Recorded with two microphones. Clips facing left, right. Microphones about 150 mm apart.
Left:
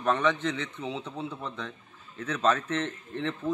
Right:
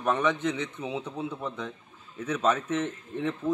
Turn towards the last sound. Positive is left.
turn(degrees=-10)  # may be behind; listen again after turning